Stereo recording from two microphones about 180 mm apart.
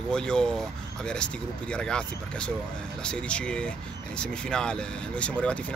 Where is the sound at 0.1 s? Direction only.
5° left (ahead or behind).